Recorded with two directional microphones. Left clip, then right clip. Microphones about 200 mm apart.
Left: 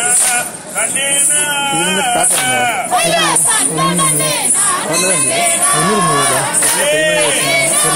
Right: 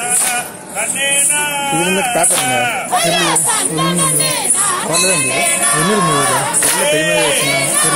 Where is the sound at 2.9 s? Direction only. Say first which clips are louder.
Even; 10° right (ahead or behind).